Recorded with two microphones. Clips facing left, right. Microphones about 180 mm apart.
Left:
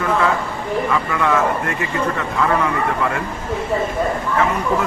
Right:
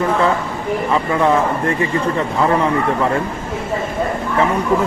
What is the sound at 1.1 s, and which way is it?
A man's voice, 30° right (ahead or behind).